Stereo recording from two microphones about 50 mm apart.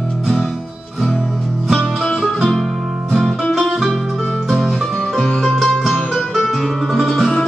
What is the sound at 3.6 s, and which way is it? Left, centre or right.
Music, centre.